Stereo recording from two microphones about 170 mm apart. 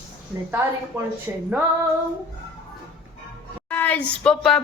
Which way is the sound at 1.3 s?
15° right (ahead or behind).